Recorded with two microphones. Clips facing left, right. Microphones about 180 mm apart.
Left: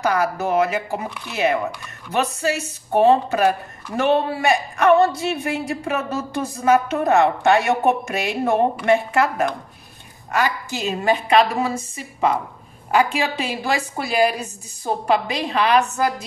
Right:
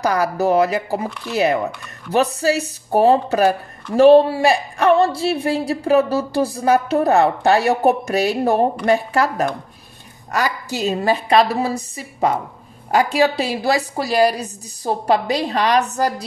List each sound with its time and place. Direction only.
0.0 s speech: 35° right (ahead or behind)